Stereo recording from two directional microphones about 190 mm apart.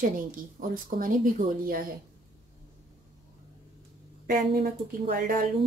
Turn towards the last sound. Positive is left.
turn(degrees=-50)  # may be behind; listen again after turning